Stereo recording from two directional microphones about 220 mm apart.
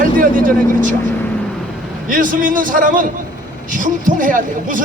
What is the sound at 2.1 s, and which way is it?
Speech, 35° right (ahead or behind).